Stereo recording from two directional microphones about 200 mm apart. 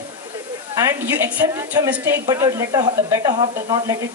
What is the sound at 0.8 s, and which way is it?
A woman's voice, 10° right (ahead or behind).